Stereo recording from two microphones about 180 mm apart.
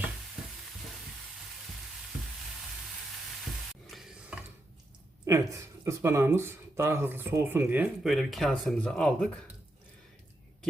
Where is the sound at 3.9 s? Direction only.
Centre (ahead or behind).